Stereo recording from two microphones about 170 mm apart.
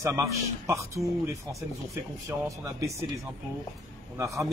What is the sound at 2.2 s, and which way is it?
Speech, 20° right (ahead or behind).